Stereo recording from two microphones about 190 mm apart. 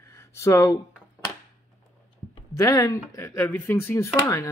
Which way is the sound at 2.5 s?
15° left (ahead or behind).